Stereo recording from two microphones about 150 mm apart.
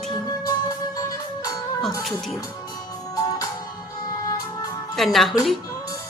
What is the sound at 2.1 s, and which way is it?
Speech, centre (ahead or behind).